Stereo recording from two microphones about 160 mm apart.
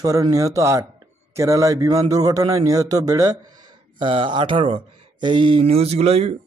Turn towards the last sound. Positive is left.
turn(degrees=-40)  # may be behind; listen again after turning